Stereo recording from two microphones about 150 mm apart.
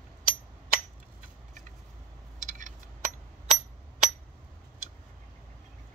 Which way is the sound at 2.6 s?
60° right (ahead or behind).